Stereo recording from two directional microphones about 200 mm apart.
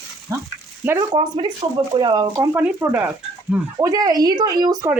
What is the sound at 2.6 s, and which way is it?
Speech, 10° right (ahead or behind).